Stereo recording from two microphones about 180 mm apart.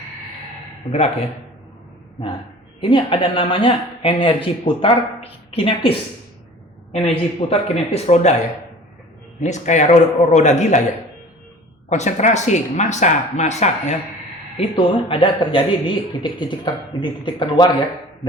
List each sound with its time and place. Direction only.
0.9 s speech: 35° left (ahead or behind)
2.8 s speech: 30° left (ahead or behind)
9.4 s speech: 40° left (ahead or behind)
11.9 s speech: 40° left (ahead or behind)
14.6 s speech: 30° left (ahead or behind)